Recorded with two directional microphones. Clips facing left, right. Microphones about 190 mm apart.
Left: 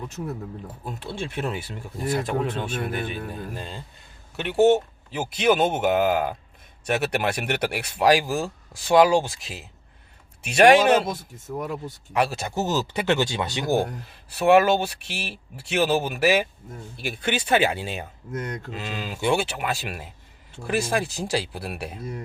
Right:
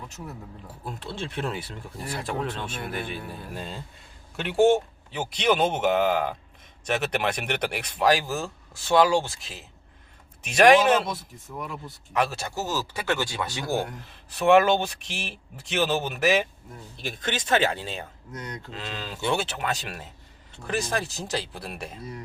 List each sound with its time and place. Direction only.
0.9 s a man's voice: 10° left (ahead or behind)
11.0 s speech: 45° left (ahead or behind)
12.1 s speech: 10° left (ahead or behind)
14.3 s speech: 5° left (ahead or behind)
18.3 s speech: 50° left (ahead or behind)
18.7 s speech: 10° left (ahead or behind)